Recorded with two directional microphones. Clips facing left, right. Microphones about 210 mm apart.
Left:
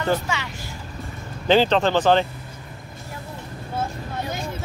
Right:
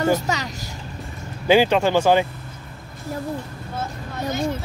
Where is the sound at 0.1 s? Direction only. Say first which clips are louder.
Right 2 dB; 40° right (ahead or behind).